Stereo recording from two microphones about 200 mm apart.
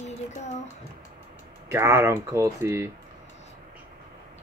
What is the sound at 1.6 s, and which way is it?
Speech, 15° right (ahead or behind).